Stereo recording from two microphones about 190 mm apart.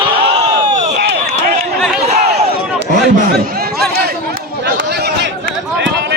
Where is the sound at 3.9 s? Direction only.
55° right (ahead or behind).